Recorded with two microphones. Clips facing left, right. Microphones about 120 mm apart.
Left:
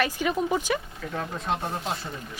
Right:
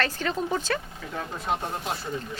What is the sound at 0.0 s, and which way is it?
Speech, 10° left (ahead or behind).